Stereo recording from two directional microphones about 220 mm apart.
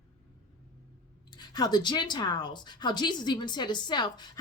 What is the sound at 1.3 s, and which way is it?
A woman's voice, 20° left (ahead or behind).